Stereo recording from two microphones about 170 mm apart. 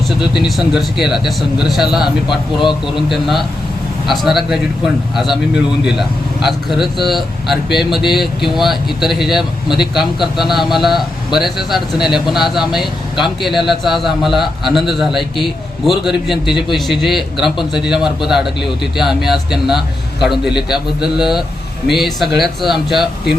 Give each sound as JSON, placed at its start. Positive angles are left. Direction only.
{"t": 0.2, "sound": "speech", "side_deg": 0}
{"t": 2.2, "sound": "speech", "side_deg": 25}
{"t": 2.8, "sound": "speech", "side_deg": 0}